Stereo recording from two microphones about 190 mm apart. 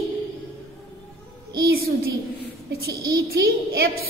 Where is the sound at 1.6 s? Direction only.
55° right (ahead or behind).